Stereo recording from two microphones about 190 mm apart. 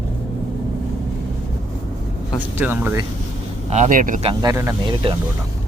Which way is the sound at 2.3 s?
10° right (ahead or behind).